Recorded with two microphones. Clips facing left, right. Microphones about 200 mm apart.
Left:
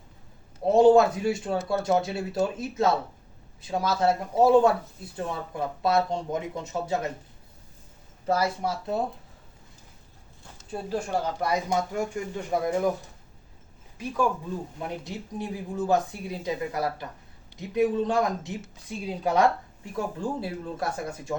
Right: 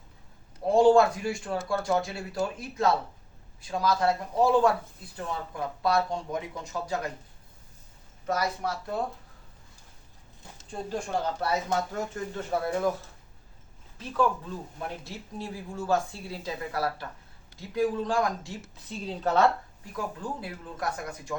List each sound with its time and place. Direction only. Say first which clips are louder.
0.6 s speech: left 2 dB; 20° left (ahead or behind)
8.3 s speech: left 4 dB; 25° left (ahead or behind)
10.7 s speech: left 3 dB; 10° left (ahead or behind)
14.0 s speech: even; 10° left (ahead or behind)
19.8 s speech: left 5 dB; 25° left (ahead or behind)